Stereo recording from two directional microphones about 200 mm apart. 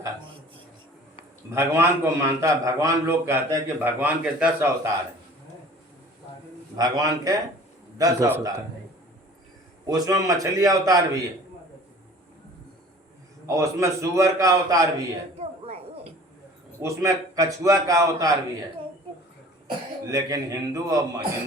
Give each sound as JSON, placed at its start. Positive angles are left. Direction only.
{"t": 1.5, "sound": "a man's voice", "side_deg": -10}
{"t": 6.7, "sound": "a man's voice", "side_deg": -20}
{"t": 9.8, "sound": "a man's voice", "side_deg": -15}
{"t": 13.5, "sound": "a man's voice", "side_deg": -15}
{"t": 15.4, "sound": "a sound", "side_deg": -30}
{"t": 16.8, "sound": "a man's voice", "side_deg": -15}
{"t": 20.1, "sound": "a man's voice", "side_deg": -15}